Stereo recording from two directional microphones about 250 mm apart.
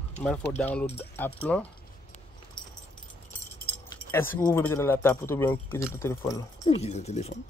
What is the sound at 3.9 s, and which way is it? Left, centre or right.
Keys jangling, centre.